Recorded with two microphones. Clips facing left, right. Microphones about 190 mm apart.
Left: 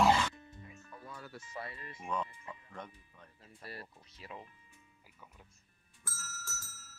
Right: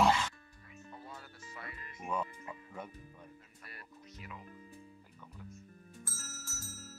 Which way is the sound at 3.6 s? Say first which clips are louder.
Left 6 dB; 30° left (ahead or behind).